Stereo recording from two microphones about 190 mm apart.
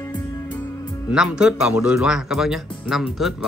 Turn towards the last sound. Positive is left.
turn(degrees=0)  # may be behind; listen again after turning